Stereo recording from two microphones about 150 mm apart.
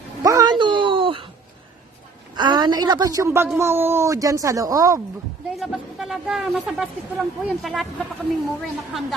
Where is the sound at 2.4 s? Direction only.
30° right (ahead or behind).